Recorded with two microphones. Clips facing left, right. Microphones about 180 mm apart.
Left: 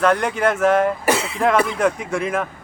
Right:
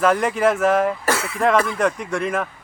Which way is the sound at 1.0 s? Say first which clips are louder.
Left 3 dB; 15° left (ahead or behind).